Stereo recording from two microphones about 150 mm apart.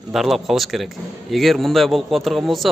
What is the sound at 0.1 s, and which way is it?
A man's voice, centre (ahead or behind).